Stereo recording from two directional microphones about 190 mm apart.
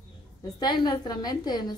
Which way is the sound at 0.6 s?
25° left (ahead or behind).